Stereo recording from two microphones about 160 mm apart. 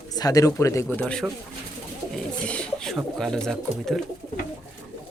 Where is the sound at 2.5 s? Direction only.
5° left (ahead or behind).